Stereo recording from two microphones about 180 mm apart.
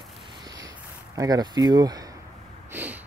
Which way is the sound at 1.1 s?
20° right (ahead or behind).